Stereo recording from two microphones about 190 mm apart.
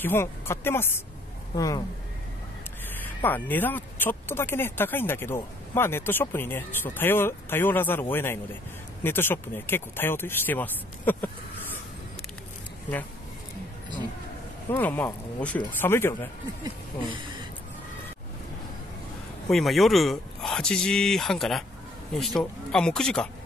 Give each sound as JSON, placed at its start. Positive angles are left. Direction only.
{"t": 0.0, "sound": "speech", "side_deg": 10}
{"t": 3.2, "sound": "speech", "side_deg": 10}
{"t": 14.7, "sound": "speech", "side_deg": 10}
{"t": 19.5, "sound": "speech", "side_deg": 0}